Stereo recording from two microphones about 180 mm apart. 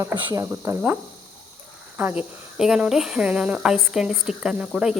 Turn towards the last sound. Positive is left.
turn(degrees=-5)  # may be behind; listen again after turning